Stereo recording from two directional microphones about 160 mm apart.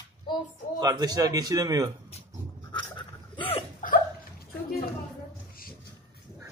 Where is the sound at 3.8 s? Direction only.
60° left (ahead or behind).